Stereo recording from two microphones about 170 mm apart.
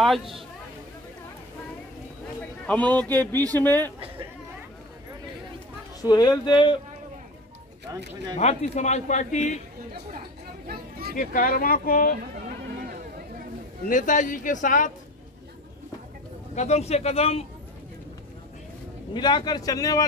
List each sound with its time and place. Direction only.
0.0 s speech: centre (ahead or behind)
2.9 s a man's voice: 10° left (ahead or behind)
5.9 s speech: 25° left (ahead or behind)
8.4 s speech: 40° left (ahead or behind)
10.7 s a sound: 60° right (ahead or behind)
11.1 s speech: 55° left (ahead or behind)
13.8 s speech: 50° left (ahead or behind)
16.5 s a man's voice: 40° left (ahead or behind)
19.1 s speech: 25° left (ahead or behind)